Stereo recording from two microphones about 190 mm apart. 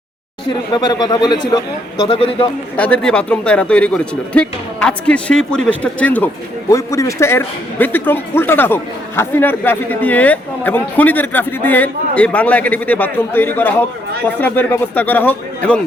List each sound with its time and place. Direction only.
0.8 s speech: 20° left (ahead or behind)
2.7 s speech: 10° left (ahead or behind)